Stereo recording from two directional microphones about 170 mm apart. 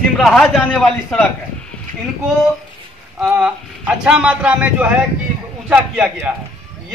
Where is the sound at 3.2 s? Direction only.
10° right (ahead or behind).